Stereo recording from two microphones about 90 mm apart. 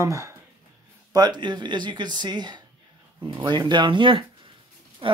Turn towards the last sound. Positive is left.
turn(degrees=-70)  # may be behind; listen again after turning